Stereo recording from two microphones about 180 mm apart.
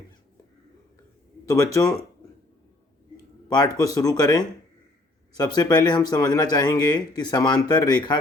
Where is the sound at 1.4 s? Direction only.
20° left (ahead or behind).